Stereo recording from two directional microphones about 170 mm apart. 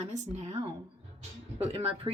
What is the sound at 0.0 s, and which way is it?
Speech, 40° right (ahead or behind).